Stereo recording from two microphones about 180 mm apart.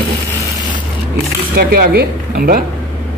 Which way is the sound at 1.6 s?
60° right (ahead or behind).